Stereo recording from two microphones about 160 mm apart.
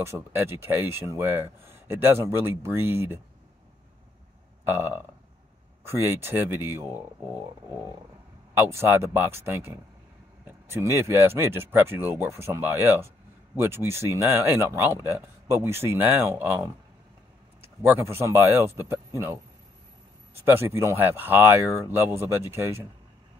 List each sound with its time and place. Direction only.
0.0 s speech: 15° right (ahead or behind)
4.6 s speech: 15° right (ahead or behind)
8.5 s speech: 15° right (ahead or behind)
20.4 s speech: 15° right (ahead or behind)